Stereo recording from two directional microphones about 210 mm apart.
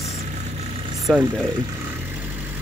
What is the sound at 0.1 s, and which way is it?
Vehicle, 30° right (ahead or behind).